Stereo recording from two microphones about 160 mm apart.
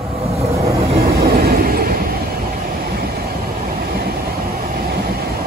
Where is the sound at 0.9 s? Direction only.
70° right (ahead or behind).